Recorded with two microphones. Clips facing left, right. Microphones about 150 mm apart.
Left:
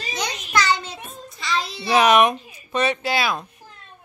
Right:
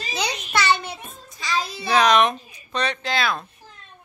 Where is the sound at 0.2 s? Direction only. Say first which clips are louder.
Left 1 dB; 60° right (ahead or behind).